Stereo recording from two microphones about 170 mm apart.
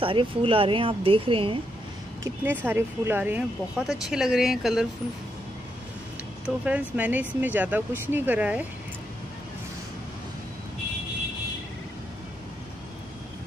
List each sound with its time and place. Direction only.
0.0 s speech: 30° right (ahead or behind)
2.2 s speech: 10° right (ahead or behind)
6.4 s speech: 10° right (ahead or behind)